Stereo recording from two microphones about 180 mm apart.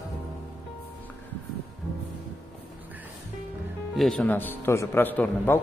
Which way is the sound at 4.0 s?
5° left (ahead or behind).